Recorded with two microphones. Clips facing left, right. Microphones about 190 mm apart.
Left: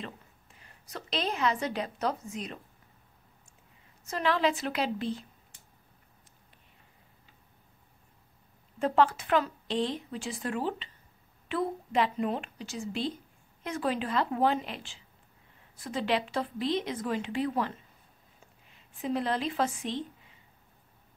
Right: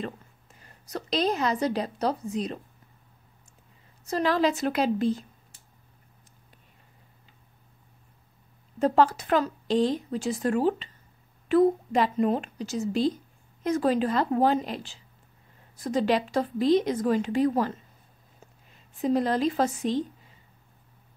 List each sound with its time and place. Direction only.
0.0 s a woman's voice: 45° right (ahead or behind)
4.0 s a woman's voice: 35° right (ahead or behind)
8.7 s a woman's voice: 40° right (ahead or behind)